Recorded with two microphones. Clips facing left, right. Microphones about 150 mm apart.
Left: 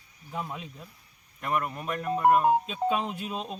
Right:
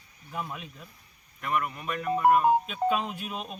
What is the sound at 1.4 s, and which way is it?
Speech, 35° left (ahead or behind).